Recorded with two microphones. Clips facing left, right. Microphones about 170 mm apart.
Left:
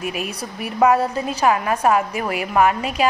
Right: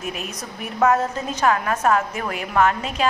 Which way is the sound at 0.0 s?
10° left (ahead or behind).